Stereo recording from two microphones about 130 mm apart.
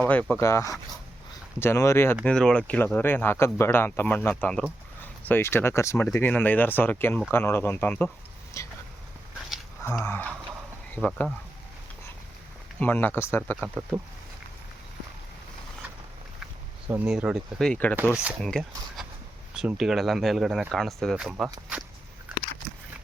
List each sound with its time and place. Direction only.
0.1 s speech: 10° left (ahead or behind)
0.3 s speech: 25° left (ahead or behind)
2.2 s speech: 5° left (ahead or behind)
8.6 s speech: 25° left (ahead or behind)
10.0 s speech: 15° left (ahead or behind)
12.8 s speech: 15° left (ahead or behind)
17.1 s speech: 5° right (ahead or behind)
17.6 s speech: 10° left (ahead or behind)
17.9 s speech: 10° right (ahead or behind)
18.4 s speech: 5° left (ahead or behind)